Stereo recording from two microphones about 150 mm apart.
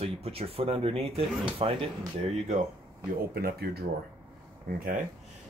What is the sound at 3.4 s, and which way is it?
Speech, 90° right.